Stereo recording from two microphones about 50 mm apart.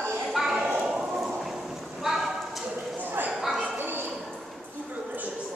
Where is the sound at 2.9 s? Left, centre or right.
Right.